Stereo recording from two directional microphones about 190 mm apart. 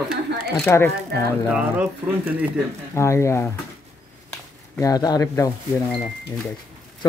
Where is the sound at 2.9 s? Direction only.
15° left (ahead or behind).